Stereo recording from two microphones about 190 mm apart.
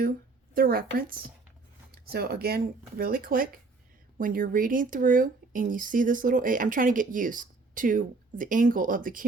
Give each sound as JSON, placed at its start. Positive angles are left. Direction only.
{"t": 0.5, "sound": "speech", "side_deg": -50}